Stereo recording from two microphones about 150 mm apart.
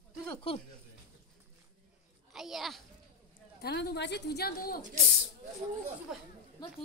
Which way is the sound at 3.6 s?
90° left.